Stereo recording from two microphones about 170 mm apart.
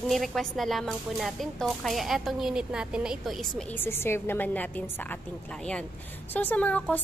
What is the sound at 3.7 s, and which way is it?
A woman's voice, 15° left (ahead or behind).